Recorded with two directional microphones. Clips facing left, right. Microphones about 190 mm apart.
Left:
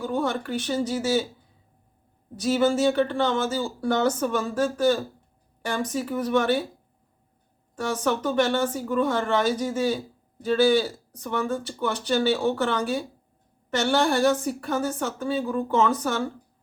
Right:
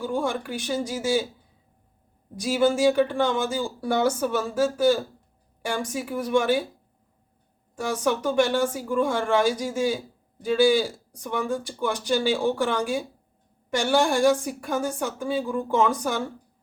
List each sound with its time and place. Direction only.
0.0 s speech: 10° right (ahead or behind)
2.3 s speech: 10° right (ahead or behind)
7.8 s speech: 10° right (ahead or behind)